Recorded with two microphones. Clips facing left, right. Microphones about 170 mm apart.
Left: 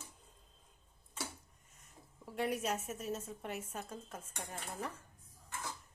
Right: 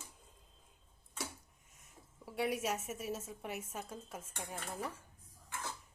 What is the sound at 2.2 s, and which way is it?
A woman's voice, 5° right (ahead or behind).